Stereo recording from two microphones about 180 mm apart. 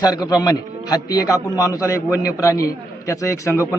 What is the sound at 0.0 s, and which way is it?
A man's voice, 20° left (ahead or behind).